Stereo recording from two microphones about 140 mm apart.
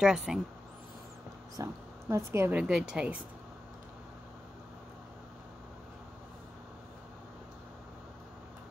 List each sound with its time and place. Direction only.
0.0 s speech: 5° right (ahead or behind)
1.6 s a woman's voice: 20° right (ahead or behind)
2.6 s a woman's voice: 5° right (ahead or behind)